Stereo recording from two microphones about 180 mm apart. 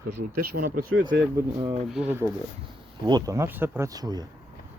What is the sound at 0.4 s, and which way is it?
Speech, 55° right (ahead or behind).